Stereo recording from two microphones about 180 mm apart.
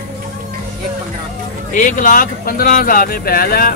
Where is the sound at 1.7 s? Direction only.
45° left (ahead or behind).